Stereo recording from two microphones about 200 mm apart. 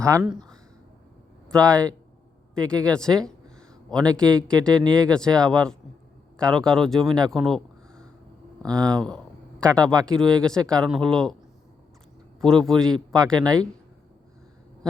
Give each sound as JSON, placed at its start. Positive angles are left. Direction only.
{"t": 0.0, "sound": "speech", "side_deg": -15}
{"t": 1.5, "sound": "speech", "side_deg": 5}
{"t": 3.9, "sound": "speech", "side_deg": -20}
{"t": 4.2, "sound": "speech", "side_deg": 5}
{"t": 7.4, "sound": "a sound", "side_deg": 0}
{"t": 8.6, "sound": "speech", "side_deg": -20}
{"t": 9.0, "sound": "a sound", "side_deg": 5}
{"t": 10.1, "sound": "speech", "side_deg": 5}
{"t": 12.4, "sound": "a man's voice", "side_deg": 5}